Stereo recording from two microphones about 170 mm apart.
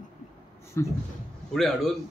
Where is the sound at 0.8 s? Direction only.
15° left (ahead or behind).